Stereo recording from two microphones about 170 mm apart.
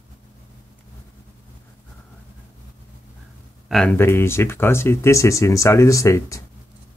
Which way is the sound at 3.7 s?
Centre (ahead or behind).